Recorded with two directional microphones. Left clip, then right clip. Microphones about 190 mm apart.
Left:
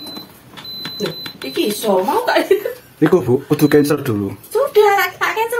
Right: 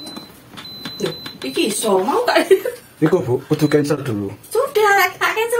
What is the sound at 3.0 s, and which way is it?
Speech, 55° left (ahead or behind).